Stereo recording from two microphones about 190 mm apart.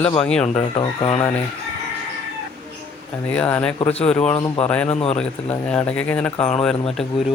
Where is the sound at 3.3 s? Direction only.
5° left (ahead or behind).